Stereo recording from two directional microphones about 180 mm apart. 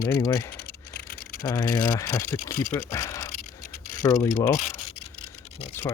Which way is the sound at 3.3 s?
45° left (ahead or behind).